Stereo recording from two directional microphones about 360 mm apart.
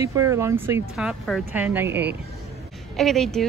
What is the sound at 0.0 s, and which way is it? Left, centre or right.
Speech, centre.